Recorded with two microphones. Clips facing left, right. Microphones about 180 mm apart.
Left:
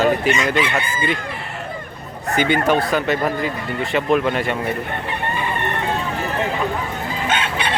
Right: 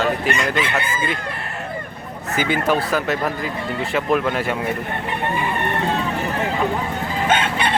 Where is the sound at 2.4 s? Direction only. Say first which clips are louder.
Left 2 dB; centre (ahead or behind).